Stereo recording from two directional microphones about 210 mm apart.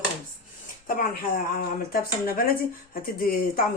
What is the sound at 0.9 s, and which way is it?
Speech, 40° left (ahead or behind).